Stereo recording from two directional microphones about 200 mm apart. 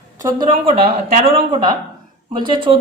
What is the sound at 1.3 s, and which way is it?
A woman's voice, 25° right (ahead or behind).